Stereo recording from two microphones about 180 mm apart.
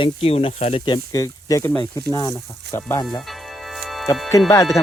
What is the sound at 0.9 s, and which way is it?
Speech, 20° left (ahead or behind).